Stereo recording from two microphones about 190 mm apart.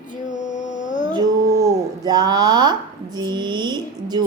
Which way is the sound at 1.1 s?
20° right (ahead or behind).